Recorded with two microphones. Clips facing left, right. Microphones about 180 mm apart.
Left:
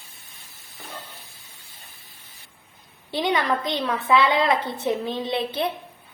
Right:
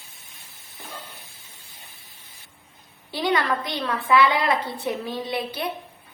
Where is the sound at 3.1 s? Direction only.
20° left (ahead or behind).